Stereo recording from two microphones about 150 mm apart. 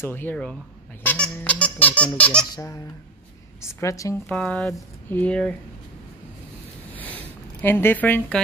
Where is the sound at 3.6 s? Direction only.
20° left (ahead or behind).